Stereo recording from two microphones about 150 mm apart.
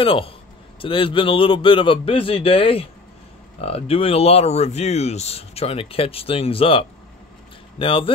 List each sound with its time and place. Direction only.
0.0 s a man's voice: 35° left (ahead or behind)